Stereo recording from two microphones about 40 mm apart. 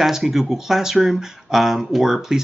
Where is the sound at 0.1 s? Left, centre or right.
Centre.